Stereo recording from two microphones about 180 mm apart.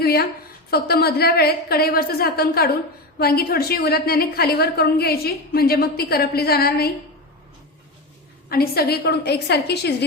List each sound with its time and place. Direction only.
0.0 s a woman's voice: 60° left (ahead or behind)
8.4 s a woman's voice: 60° left (ahead or behind)